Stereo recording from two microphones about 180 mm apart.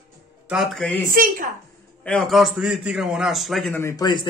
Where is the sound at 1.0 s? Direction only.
50° right (ahead or behind).